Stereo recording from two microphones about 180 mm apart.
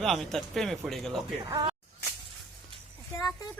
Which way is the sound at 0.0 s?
Centre (ahead or behind).